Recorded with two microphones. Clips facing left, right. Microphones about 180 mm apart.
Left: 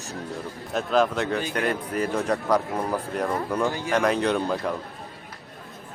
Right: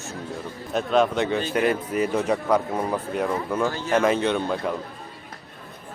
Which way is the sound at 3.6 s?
15° left (ahead or behind).